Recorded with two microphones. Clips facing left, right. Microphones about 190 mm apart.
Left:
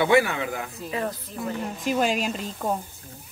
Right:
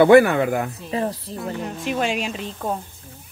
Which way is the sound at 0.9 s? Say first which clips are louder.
Right 5 dB; 35° right (ahead or behind).